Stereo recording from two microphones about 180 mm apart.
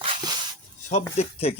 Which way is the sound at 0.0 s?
30° right (ahead or behind).